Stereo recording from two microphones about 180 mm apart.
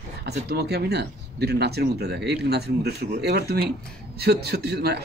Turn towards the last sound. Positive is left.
turn(degrees=-65)  # may be behind; listen again after turning